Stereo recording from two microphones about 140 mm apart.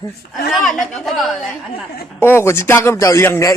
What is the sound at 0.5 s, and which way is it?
Speech, centre (ahead or behind).